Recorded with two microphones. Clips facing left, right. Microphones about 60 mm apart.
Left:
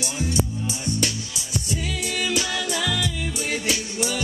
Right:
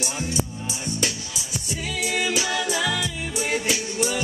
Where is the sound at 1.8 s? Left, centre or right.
Centre.